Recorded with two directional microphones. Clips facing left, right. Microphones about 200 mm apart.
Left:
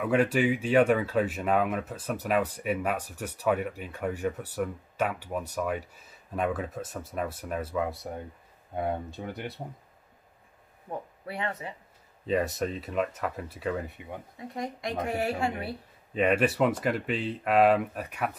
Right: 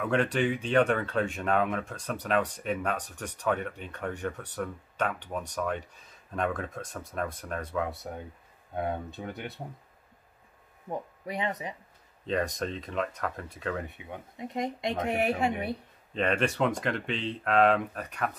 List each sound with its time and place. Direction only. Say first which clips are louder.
0.0 s speech: left 2 dB; 10° left (ahead or behind)
9.1 s speech: left 1 dB; centre (ahead or behind)
10.9 s a woman's voice: right 2 dB; 25° right (ahead or behind)
12.3 s speech: left 2 dB; 5° left (ahead or behind)
14.4 s a woman's voice: right 3 dB; 20° right (ahead or behind)
16.1 s speech: left 3 dB; 10° left (ahead or behind)